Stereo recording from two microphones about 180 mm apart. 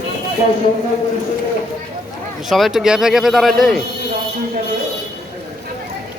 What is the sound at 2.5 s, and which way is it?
Speech, centre (ahead or behind).